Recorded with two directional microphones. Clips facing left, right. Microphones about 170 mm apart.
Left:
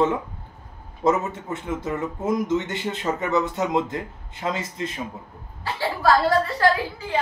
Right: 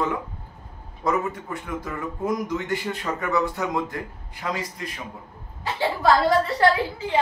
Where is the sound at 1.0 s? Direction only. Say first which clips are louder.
Left 3 dB; 25° left (ahead or behind).